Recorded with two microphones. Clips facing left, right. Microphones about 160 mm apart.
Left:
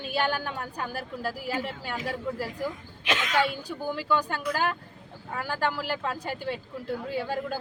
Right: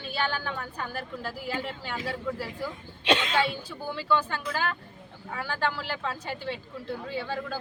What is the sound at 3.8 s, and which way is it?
Speech, 15° left (ahead or behind).